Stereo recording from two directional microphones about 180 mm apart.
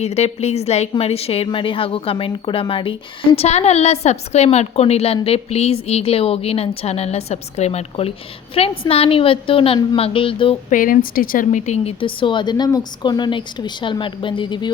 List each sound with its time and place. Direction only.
0.0 s a woman's voice: 35° left (ahead or behind)
10.7 s speech: 50° left (ahead or behind); by 14.7 s 25° left (ahead or behind)